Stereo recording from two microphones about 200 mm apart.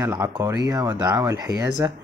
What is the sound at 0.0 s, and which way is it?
Speech, 15° right (ahead or behind).